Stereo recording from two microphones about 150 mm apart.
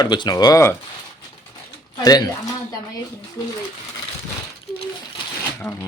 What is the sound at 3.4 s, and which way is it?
Speech, 25° left (ahead or behind).